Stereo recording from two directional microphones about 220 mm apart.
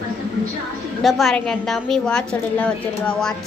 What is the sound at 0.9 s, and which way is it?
Child singing, centre (ahead or behind).